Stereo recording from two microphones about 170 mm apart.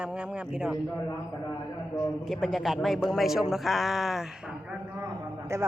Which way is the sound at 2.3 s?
Centre (ahead or behind).